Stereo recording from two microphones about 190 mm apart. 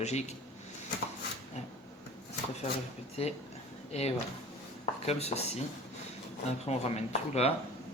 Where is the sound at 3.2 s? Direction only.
35° left (ahead or behind).